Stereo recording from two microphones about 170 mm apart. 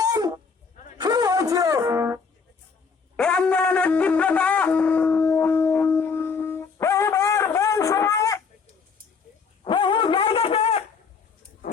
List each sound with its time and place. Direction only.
0.0 s dog: 20° right (ahead or behind)
0.9 s music: 25° right (ahead or behind)
3.2 s shofar: 5° left (ahead or behind)
9.6 s dog: 30° left (ahead or behind)